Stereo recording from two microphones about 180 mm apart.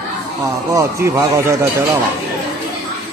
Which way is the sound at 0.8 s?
15° right (ahead or behind).